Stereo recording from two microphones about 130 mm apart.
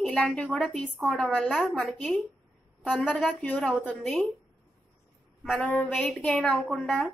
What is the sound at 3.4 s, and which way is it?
Speech, 10° left (ahead or behind).